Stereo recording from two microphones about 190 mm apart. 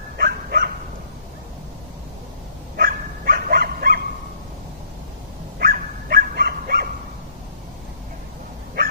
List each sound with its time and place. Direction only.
0.2 s dog: 55° right (ahead or behind)
2.7 s dog: 50° right (ahead or behind)
5.6 s dog: 50° right (ahead or behind)